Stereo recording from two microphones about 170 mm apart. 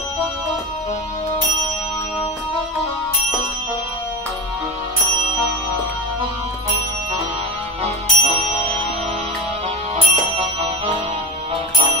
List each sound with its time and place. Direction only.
7.8 s music: 35° right (ahead or behind)
10.1 s music: 35° right (ahead or behind)